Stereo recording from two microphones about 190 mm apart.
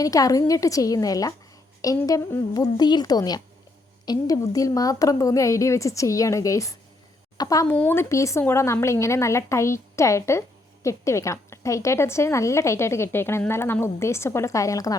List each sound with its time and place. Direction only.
0.0 s a woman's voice: 20° left (ahead or behind)